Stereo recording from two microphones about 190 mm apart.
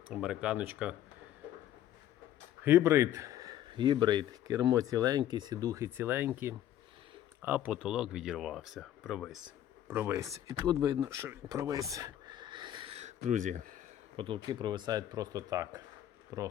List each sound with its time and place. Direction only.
0.1 s speech: 5° right (ahead or behind)
2.6 s speech: 10° right (ahead or behind)
9.9 s speech: 10° right (ahead or behind); by 13.8 s 45° right (ahead or behind)
14.2 s speech: 25° right (ahead or behind)